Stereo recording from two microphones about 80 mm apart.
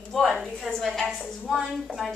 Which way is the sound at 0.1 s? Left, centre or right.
Centre.